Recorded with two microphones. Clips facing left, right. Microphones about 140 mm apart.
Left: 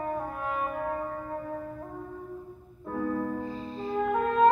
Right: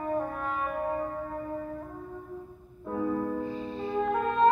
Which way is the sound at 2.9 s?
15° right (ahead or behind).